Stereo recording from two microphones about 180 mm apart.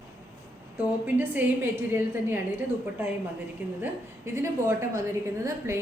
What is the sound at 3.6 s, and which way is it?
A woman's voice, 5° right (ahead or behind).